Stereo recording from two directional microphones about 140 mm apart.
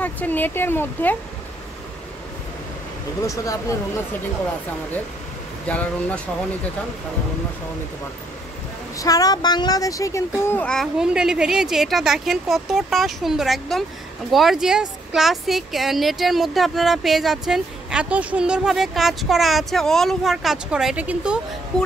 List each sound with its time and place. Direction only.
0.0 s speech: 10° left (ahead or behind)
3.2 s speech: 25° left (ahead or behind)
5.7 s speech: 10° left (ahead or behind)
8.9 s speech: 25° left (ahead or behind)
10.7 s speech: centre (ahead or behind)